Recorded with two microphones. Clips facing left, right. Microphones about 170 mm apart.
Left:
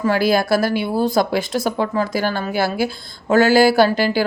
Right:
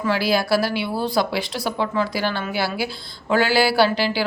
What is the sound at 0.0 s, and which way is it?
Speech, 50° left (ahead or behind).